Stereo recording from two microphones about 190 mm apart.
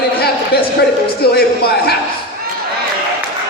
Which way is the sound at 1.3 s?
55° left (ahead or behind).